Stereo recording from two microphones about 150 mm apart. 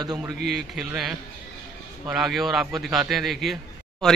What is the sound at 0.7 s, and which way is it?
Speech, 5° right (ahead or behind).